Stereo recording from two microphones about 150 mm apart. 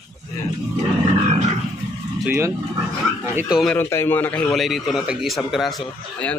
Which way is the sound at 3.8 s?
15° left (ahead or behind).